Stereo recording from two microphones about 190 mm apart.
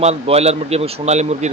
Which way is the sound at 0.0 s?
35° right (ahead or behind).